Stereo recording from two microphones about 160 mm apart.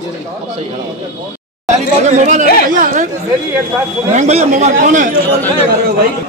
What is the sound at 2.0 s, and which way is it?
Speech, 50° right (ahead or behind).